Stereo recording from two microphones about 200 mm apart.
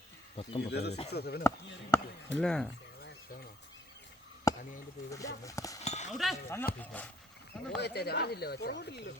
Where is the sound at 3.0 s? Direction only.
50° left (ahead or behind).